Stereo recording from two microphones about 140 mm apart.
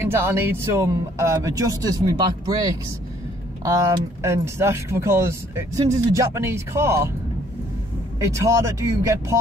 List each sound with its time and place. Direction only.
0.0 s speech: 15° right (ahead or behind)
8.2 s speech: 20° right (ahead or behind)